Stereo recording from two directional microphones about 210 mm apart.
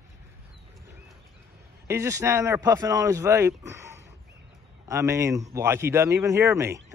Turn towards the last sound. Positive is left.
turn(degrees=-15)  # may be behind; listen again after turning